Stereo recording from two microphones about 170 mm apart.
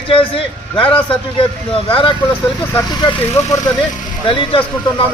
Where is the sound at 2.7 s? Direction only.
20° left (ahead or behind).